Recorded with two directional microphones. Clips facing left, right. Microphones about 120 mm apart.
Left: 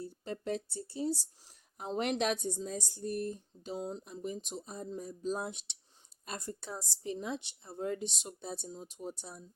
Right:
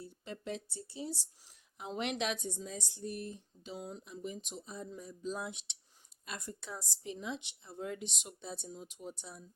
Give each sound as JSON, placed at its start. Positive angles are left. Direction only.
{"t": 0.0, "sound": "a woman's voice", "side_deg": 40}